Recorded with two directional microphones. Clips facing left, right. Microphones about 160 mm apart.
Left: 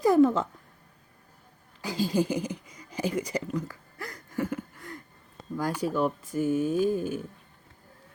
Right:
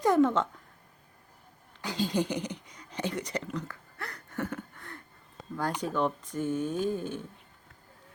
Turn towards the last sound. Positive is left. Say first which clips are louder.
# left 5 dB
turn(degrees=10)  # may be behind; listen again after turning